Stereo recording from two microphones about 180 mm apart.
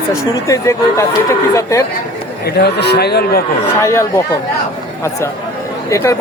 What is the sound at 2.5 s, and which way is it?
Speech, 65° left (ahead or behind).